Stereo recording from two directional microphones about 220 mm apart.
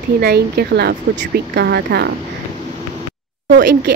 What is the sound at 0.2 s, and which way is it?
Speech, 45° right (ahead or behind).